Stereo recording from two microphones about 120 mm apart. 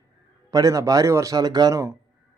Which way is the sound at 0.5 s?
30° right (ahead or behind).